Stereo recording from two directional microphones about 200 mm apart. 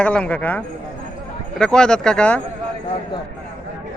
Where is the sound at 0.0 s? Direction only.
5° left (ahead or behind).